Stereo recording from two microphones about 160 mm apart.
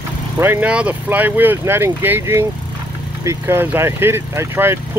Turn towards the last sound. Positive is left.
turn(degrees=-15)  # may be behind; listen again after turning